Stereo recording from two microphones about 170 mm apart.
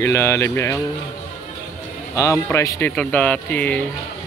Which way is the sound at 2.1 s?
20° left (ahead or behind).